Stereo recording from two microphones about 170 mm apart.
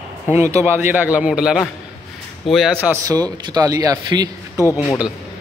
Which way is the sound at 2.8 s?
20° right (ahead or behind).